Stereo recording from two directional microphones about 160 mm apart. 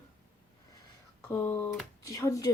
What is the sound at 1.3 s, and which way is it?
Speech, 15° left (ahead or behind).